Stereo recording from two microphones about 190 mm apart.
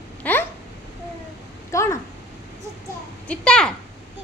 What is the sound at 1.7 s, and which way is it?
Speech, 15° left (ahead or behind).